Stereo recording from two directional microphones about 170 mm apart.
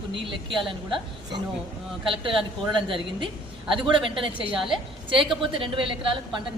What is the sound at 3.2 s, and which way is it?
A woman's voice, 30° right (ahead or behind).